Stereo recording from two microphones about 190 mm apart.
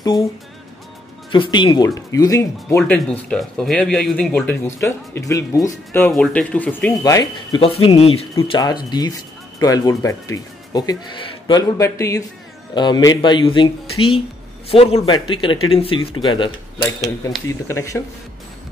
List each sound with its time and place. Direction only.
0.1 s speech: centre (ahead or behind)
1.3 s speech: 25° left (ahead or behind)
2.9 s speech: 5° left (ahead or behind)
7.0 s speech: 20° left (ahead or behind)
7.6 s speech: 30° left (ahead or behind)
17.5 s speech: 15° left (ahead or behind)